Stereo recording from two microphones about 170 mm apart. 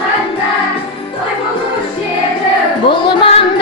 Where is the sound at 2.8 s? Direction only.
30° left (ahead or behind).